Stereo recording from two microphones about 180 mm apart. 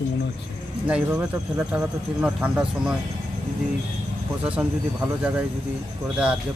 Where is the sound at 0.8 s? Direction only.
10° right (ahead or behind).